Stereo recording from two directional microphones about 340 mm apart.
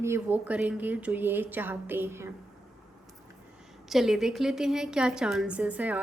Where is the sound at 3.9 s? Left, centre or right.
Centre.